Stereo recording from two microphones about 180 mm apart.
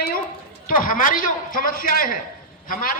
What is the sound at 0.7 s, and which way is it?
A man's voice, 50° left (ahead or behind).